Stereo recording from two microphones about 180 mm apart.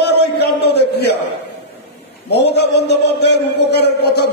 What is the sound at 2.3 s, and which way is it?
A man's voice, 70° left (ahead or behind).